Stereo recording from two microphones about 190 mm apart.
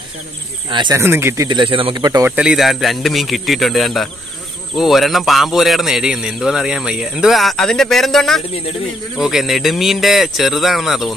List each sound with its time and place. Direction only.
0.7 s speech: 25° right (ahead or behind)
2.2 s a man's voice: 5° right (ahead or behind)